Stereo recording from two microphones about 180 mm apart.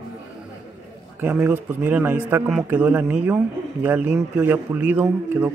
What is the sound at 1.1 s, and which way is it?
A man's voice, 10° right (ahead or behind).